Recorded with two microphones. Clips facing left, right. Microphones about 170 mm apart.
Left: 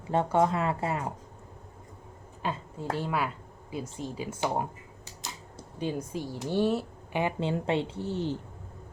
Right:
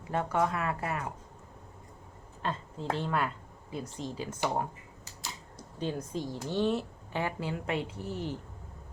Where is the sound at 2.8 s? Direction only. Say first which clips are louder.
Left 1 dB; 5° left (ahead or behind).